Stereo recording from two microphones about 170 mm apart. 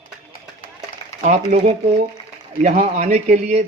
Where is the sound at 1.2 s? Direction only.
45° right (ahead or behind).